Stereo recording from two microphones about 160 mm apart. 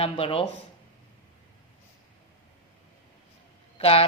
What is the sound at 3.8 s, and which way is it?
Speech, 35° left (ahead or behind).